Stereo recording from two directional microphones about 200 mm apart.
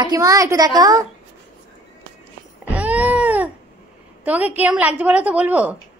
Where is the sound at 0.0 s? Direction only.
20° right (ahead or behind).